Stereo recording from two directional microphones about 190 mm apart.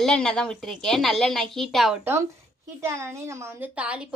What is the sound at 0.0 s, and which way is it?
A woman's voice, 5° left (ahead or behind).